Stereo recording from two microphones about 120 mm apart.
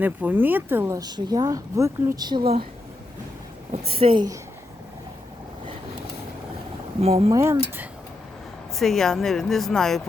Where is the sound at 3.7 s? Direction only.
55° right (ahead or behind).